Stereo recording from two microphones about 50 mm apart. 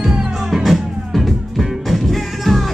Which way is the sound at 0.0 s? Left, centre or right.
Centre.